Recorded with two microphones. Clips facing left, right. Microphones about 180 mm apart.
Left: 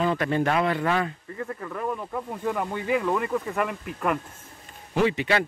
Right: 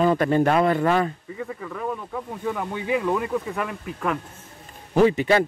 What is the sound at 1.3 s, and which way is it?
Speech, 5° right (ahead or behind).